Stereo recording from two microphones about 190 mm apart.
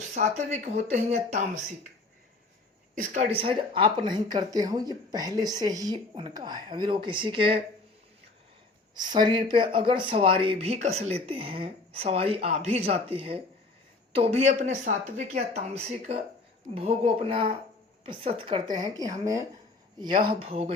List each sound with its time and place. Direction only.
0.1 s speech: 35° right (ahead or behind)
2.9 s a woman's voice: 45° right (ahead or behind)
3.3 s speech: 30° right (ahead or behind)
9.0 s speech: 25° right (ahead or behind)